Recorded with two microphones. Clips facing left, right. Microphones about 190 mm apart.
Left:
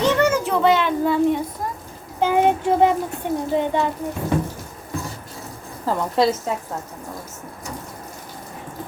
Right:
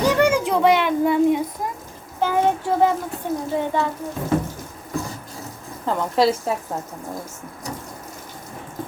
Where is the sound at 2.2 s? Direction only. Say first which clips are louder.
Left 2 dB; 20° left (ahead or behind).